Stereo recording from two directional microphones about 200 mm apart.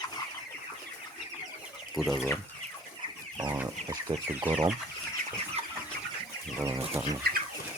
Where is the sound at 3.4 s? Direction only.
15° right (ahead or behind).